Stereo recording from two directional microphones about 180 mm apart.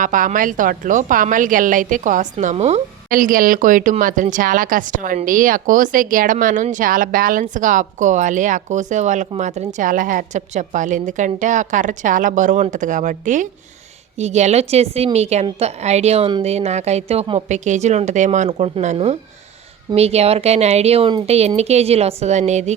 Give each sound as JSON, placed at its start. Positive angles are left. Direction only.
{"t": 0.0, "sound": "a woman's voice", "side_deg": -45}